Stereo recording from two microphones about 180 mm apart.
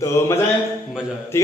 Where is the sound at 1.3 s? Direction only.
15° left (ahead or behind).